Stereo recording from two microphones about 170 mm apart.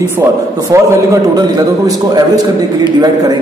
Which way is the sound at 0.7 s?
20° right (ahead or behind).